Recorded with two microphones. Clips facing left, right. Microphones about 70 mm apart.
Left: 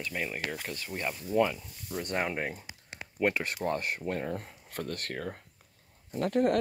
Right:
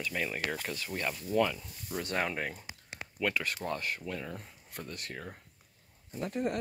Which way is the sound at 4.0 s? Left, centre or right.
Left.